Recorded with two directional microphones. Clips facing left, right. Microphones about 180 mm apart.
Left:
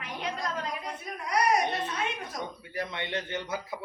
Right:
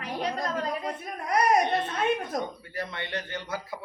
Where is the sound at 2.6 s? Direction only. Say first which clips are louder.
Even; 20° left (ahead or behind).